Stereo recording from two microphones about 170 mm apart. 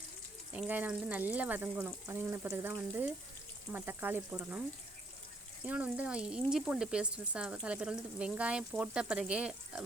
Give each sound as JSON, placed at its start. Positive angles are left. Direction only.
{"t": 0.5, "sound": "speech", "side_deg": -10}
{"t": 5.6, "sound": "speech", "side_deg": -10}